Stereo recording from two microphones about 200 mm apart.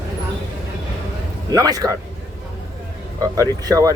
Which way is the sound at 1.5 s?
20° right (ahead or behind).